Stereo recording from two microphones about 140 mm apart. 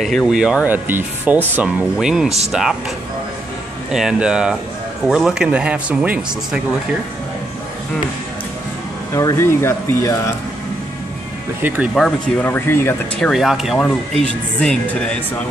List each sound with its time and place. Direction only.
0.0 s speech: centre (ahead or behind)
3.9 s speech: 5° right (ahead or behind)
9.1 s speech: 20° left (ahead or behind)
11.6 s speech: 10° right (ahead or behind)
11.9 s speech: 5° left (ahead or behind)
12.4 s speech: 15° left (ahead or behind)
13.2 s speech: centre (ahead or behind)